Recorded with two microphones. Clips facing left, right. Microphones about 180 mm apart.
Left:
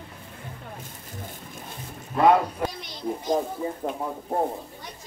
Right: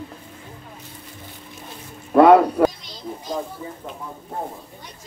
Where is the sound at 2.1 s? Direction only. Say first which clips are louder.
Right 8 dB; 65° right (ahead or behind).